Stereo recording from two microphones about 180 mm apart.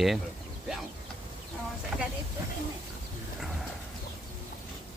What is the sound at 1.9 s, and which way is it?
Vehicle, centre (ahead or behind).